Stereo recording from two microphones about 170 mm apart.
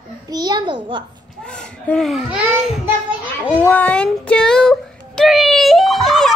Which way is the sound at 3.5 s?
10° left (ahead or behind).